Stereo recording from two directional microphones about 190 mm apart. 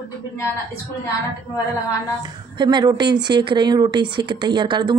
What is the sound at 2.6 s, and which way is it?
Speech, 25° right (ahead or behind).